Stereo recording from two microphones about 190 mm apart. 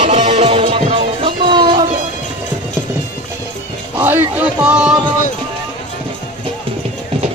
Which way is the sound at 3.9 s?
10° right (ahead or behind).